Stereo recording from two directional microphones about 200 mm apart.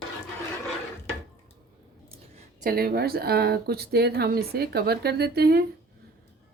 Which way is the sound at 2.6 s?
50° right (ahead or behind).